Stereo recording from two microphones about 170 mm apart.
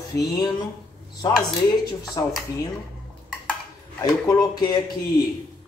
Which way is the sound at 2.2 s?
20° left (ahead or behind).